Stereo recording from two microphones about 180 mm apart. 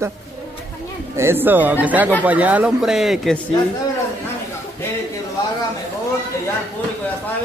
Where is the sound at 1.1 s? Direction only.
15° right (ahead or behind).